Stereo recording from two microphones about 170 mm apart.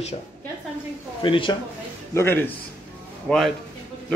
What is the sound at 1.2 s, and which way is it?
Speech, 30° left (ahead or behind).